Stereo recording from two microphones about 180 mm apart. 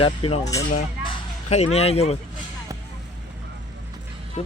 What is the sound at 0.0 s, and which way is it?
Speech, 30° left (ahead or behind).